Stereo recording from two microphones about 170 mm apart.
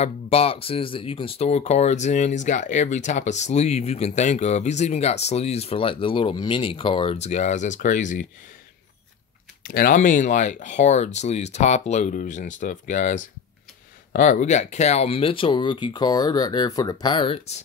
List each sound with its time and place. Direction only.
0.0 s speech: 35° left (ahead or behind)
9.6 s speech: 55° left (ahead or behind); by 17.6 s 35° left (ahead or behind)